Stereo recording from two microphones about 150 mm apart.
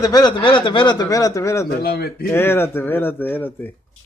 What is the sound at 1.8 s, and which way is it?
Speech, 90° left.